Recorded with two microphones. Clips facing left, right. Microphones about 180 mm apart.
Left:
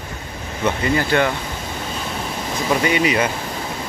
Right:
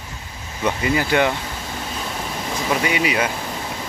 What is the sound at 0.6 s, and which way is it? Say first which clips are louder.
Speech: left 1 dB; 10° right (ahead or behind).